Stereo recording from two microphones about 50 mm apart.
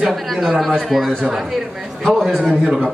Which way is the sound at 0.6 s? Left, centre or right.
Centre.